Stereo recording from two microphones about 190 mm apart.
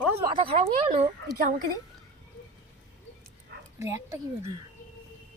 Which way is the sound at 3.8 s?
15° right (ahead or behind).